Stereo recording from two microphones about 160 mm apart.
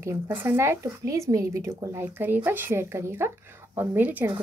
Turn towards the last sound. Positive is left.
turn(degrees=-10)  # may be behind; listen again after turning